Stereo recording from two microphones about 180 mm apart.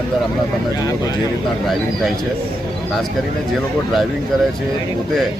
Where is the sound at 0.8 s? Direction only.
20° left (ahead or behind).